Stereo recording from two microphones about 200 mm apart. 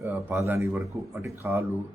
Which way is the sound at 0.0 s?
10° right (ahead or behind).